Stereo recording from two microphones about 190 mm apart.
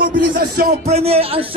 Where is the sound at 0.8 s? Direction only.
35° right (ahead or behind).